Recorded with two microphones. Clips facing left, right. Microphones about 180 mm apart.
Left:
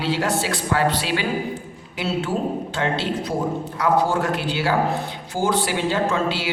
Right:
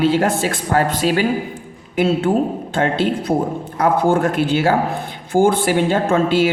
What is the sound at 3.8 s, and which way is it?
A woman's voice, 50° right (ahead or behind).